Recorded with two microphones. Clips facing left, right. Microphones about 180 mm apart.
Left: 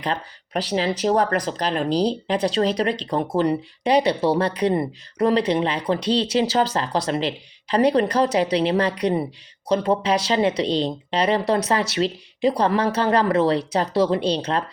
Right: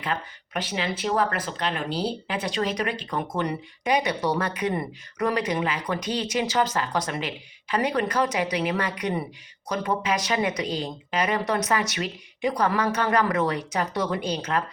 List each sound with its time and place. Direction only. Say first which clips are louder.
0.0 s speech: left 4 dB; 35° left (ahead or behind)